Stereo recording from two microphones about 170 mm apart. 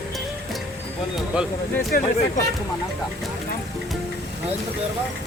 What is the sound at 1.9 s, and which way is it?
Speech, 55° left (ahead or behind).